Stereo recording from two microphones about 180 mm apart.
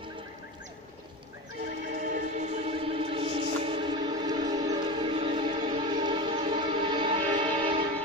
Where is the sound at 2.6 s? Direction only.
30° right (ahead or behind).